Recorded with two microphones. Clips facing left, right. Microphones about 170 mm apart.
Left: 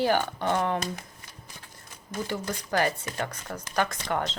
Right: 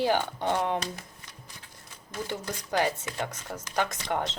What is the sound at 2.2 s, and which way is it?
Speech, 20° right (ahead or behind).